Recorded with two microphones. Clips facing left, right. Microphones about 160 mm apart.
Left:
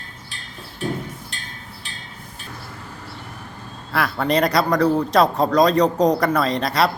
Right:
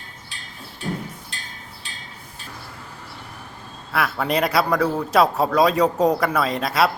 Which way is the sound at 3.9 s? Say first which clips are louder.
Left 2 dB; 5° right (ahead or behind).